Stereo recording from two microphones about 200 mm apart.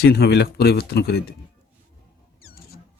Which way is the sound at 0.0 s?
55° left (ahead or behind).